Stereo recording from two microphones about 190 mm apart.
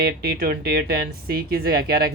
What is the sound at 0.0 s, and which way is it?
Speech, 50° right (ahead or behind).